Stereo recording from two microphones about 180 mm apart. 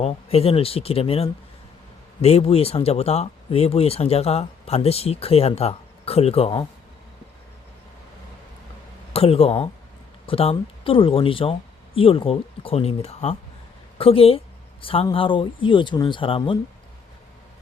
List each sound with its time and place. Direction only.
0.0 s speech: 35° left (ahead or behind)
9.1 s speech: 30° left (ahead or behind)